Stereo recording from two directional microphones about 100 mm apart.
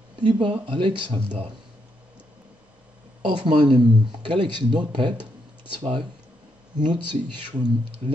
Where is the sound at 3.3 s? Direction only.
60° right (ahead or behind).